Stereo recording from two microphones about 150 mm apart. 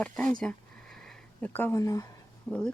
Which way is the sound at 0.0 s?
10° left (ahead or behind).